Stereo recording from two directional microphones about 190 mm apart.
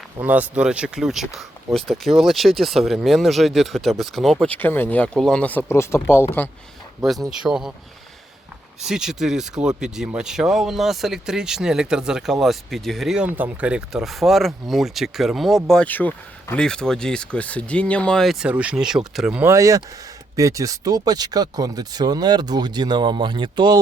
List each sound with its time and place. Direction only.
0.2 s speech: 10° right (ahead or behind); by 6.2 s 15° left (ahead or behind)
7.0 s speech: centre (ahead or behind)
8.8 s speech: 5° right (ahead or behind); by 23.8 s 25° right (ahead or behind)